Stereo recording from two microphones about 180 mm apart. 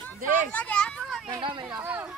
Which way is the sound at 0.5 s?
10° left (ahead or behind).